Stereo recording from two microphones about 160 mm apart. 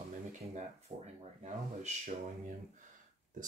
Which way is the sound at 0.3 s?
40° right (ahead or behind).